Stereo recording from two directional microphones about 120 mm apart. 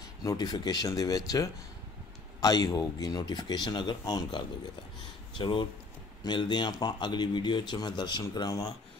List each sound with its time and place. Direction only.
0.2 s speech: 30° left (ahead or behind)
5.4 s speech: 45° left (ahead or behind)